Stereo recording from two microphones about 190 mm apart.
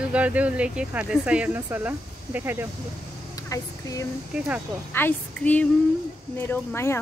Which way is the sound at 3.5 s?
15° left (ahead or behind).